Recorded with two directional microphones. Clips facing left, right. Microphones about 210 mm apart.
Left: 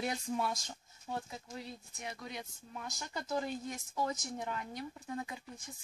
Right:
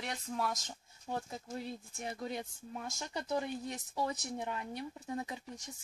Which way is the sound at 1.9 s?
30° right (ahead or behind).